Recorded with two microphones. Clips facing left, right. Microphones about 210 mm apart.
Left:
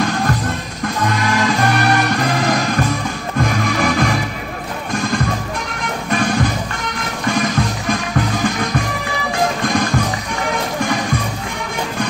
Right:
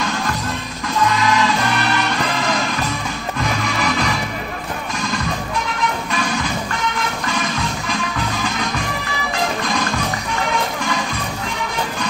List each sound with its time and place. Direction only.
0.0 s music: 50° left (ahead or behind)